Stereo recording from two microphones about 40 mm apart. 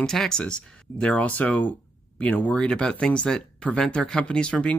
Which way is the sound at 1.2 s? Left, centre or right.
Left.